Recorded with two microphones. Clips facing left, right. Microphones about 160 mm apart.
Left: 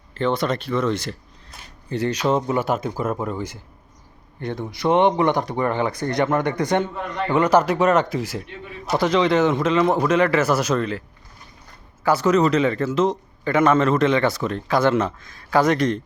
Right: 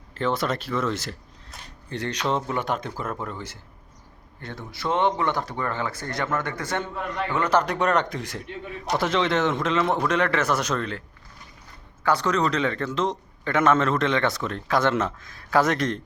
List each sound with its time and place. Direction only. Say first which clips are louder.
0.1 s a man's voice: left 3 dB; 5° right (ahead or behind)
12.0 s a man's voice: left 5 dB; 5° left (ahead or behind)